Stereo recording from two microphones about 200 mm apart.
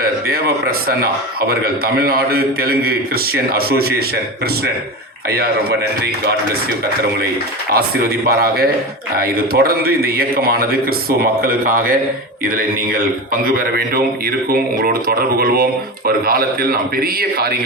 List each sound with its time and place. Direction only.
0.0 s a man's voice: 50° right (ahead or behind)
5.3 s a man's voice: 50° right (ahead or behind)
7.7 s a man's voice: 50° right (ahead or behind)